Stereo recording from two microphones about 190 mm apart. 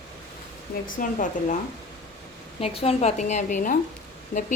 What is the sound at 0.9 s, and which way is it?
Speech, 45° left (ahead or behind).